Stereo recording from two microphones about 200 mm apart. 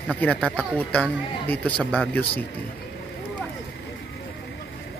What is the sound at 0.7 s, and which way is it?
Speech, 5° left (ahead or behind).